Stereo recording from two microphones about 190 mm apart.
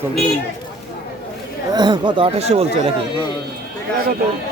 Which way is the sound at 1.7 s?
25° right (ahead or behind).